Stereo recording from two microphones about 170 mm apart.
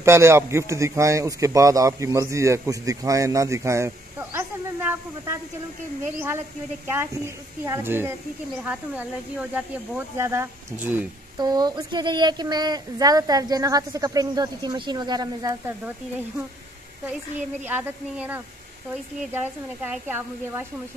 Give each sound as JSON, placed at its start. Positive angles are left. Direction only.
{"t": 0.0, "sound": "a man's voice", "side_deg": -15}
{"t": 6.9, "sound": "a man's voice", "side_deg": -15}
{"t": 11.3, "sound": "speech", "side_deg": -25}
{"t": 17.6, "sound": "a man's voice", "side_deg": -10}